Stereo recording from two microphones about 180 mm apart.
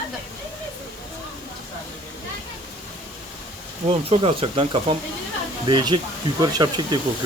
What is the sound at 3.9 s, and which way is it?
Speech, 35° right (ahead or behind).